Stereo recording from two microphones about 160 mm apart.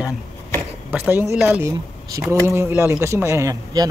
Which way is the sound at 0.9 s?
10° right (ahead or behind).